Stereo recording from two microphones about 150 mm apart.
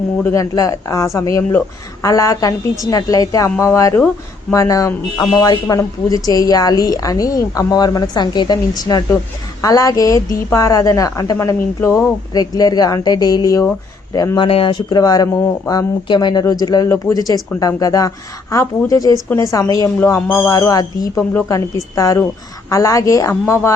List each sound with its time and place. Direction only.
0.2 s a woman's voice: 20° left (ahead or behind)
14.4 s a woman's voice: 35° left (ahead or behind); by 23.3 s 20° left (ahead or behind)